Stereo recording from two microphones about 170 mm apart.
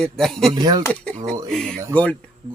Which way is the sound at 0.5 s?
25° right (ahead or behind).